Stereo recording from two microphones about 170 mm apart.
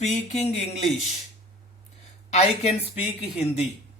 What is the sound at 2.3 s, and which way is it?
Speech, 40° left (ahead or behind).